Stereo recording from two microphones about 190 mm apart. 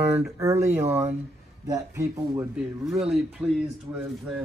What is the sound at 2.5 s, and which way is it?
A man's voice, centre (ahead or behind).